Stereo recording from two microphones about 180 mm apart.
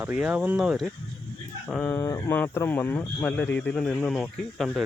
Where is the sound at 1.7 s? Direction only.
10° left (ahead or behind).